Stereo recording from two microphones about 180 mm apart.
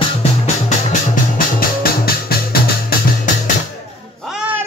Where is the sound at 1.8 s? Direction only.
55° left (ahead or behind).